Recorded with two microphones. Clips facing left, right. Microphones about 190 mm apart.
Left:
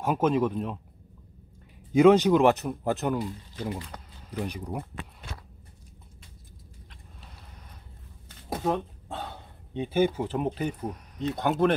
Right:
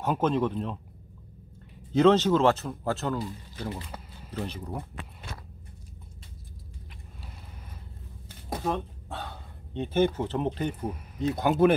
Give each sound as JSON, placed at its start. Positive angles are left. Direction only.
{"t": 0.0, "sound": "a man's voice", "side_deg": 5}
{"t": 1.9, "sound": "a man's voice", "side_deg": 10}
{"t": 4.3, "sound": "a man's voice", "side_deg": 15}
{"t": 8.5, "sound": "a sound", "side_deg": 5}
{"t": 9.8, "sound": "speech", "side_deg": 10}